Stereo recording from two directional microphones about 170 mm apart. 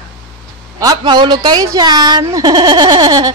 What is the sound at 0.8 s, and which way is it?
Speech, 25° right (ahead or behind).